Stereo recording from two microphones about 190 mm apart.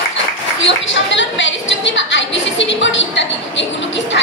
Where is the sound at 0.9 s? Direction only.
75° left (ahead or behind).